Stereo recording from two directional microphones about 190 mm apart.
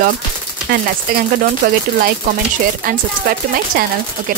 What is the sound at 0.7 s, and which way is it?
Speech, 50° right (ahead or behind).